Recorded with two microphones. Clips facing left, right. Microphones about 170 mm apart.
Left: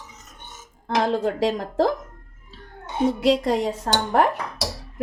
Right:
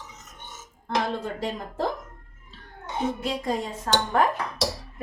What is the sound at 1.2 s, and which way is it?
Speech, 90° left.